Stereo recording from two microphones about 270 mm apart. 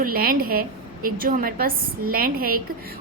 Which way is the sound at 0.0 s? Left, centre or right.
Right.